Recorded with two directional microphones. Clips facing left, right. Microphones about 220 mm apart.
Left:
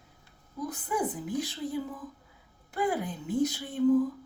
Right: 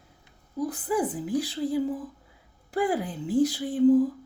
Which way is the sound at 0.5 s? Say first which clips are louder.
Right 5 dB; 35° right (ahead or behind).